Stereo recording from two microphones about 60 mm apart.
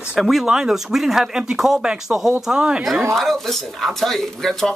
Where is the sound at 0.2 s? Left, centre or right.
Centre.